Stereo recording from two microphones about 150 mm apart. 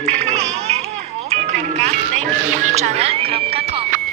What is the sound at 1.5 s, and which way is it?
Music, 55° right (ahead or behind).